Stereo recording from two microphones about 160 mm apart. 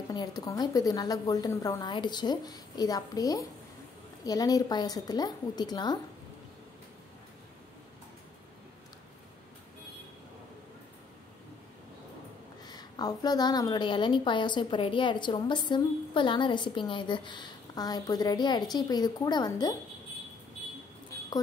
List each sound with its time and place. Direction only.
0.1 s a woman's voice: 25° left (ahead or behind)
12.6 s a woman's voice: 25° left (ahead or behind)